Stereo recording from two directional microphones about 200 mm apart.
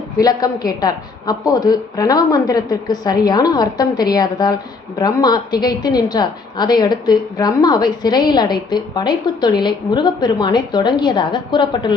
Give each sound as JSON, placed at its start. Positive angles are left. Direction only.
{"t": 0.2, "sound": "a woman's voice", "side_deg": 20}